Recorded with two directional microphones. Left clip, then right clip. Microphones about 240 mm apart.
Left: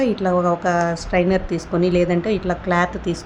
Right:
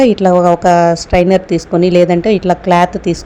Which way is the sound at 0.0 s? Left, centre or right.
Right.